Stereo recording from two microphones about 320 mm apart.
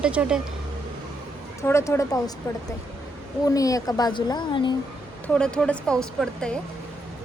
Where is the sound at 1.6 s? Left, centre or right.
Centre.